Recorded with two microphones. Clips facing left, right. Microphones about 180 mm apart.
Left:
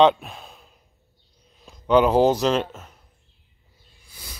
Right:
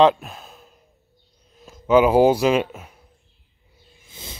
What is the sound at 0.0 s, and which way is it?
Sigh, centre (ahead or behind).